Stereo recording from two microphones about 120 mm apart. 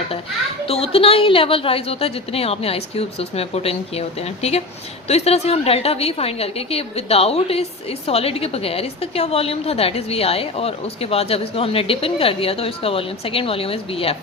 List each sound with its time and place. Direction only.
0.6 s a woman's voice: 55° left (ahead or behind)